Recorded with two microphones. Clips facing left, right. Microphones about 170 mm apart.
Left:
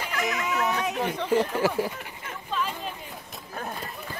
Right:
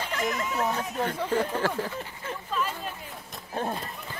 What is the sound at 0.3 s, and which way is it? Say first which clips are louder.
Speech: left 2 dB; 75° left (ahead or behind).